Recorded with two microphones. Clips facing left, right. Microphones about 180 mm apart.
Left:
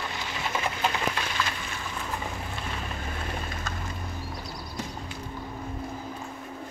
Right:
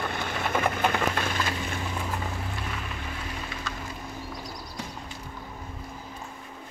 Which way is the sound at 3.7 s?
45° left (ahead or behind).